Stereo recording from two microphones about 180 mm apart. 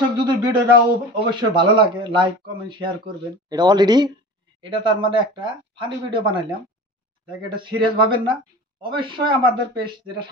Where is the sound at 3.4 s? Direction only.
25° right (ahead or behind).